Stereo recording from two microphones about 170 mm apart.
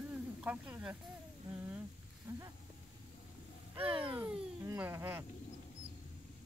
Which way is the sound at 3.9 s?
10° right (ahead or behind).